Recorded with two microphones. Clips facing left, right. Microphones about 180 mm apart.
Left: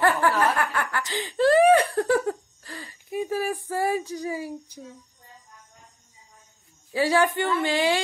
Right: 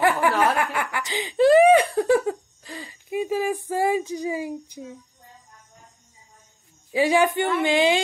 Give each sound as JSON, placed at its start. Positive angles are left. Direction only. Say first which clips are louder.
{"t": 0.0, "sound": "snicker", "louder": "right 1 dB", "side_deg": -15}
{"t": 6.9, "sound": "speech", "louder": "right 2 dB", "side_deg": -15}